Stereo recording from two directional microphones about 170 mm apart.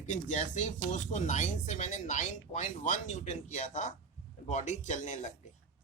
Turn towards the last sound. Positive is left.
turn(degrees=45)  # may be behind; listen again after turning